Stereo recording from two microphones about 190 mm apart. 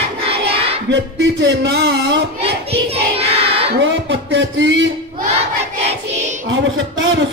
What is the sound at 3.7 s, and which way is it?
Music, 75° right (ahead or behind).